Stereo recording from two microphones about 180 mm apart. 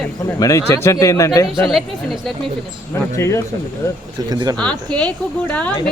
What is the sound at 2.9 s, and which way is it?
Speech, 15° left (ahead or behind).